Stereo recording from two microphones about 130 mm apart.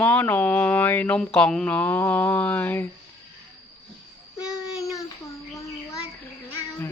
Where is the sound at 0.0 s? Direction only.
15° left (ahead or behind).